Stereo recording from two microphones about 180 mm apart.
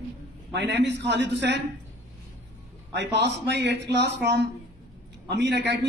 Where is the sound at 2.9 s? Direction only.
75° right (ahead or behind).